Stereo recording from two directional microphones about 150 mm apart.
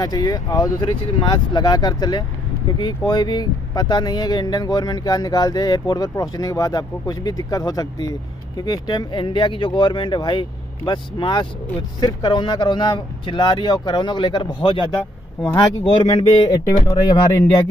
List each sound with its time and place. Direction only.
0.0 s speech: 25° left (ahead or behind)